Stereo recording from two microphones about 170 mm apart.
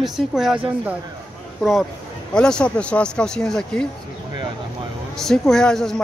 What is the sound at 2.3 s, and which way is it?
Speech, 5° left (ahead or behind).